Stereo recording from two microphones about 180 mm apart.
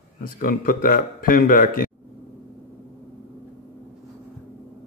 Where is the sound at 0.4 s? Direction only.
50° left (ahead or behind).